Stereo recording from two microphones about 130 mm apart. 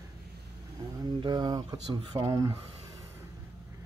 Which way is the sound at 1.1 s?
35° right (ahead or behind).